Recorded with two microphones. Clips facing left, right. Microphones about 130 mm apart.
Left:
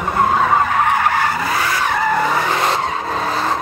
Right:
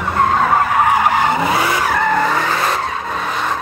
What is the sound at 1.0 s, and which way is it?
Vehicle, 15° right (ahead or behind).